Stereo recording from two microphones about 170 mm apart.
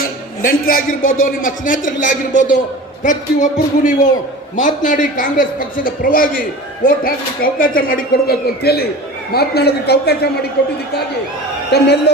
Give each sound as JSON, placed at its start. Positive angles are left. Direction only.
{"t": 0.0, "sound": "a man's voice", "side_deg": 60}